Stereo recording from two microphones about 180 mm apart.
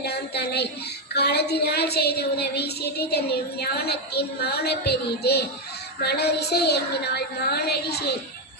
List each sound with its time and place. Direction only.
0.0 s a woman's voice: 65° left (ahead or behind)